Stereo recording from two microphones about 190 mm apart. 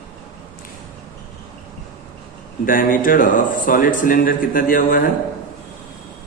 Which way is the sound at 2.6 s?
45° left (ahead or behind).